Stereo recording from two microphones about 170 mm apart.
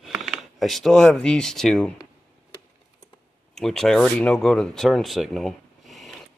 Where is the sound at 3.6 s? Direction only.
Centre (ahead or behind).